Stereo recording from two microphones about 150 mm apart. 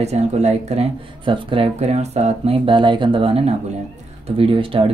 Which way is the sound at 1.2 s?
35° right (ahead or behind).